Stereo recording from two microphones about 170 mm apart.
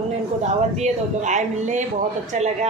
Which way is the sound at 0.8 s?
45° right (ahead or behind).